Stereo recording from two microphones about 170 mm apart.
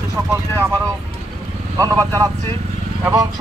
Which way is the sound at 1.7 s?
20° right (ahead or behind).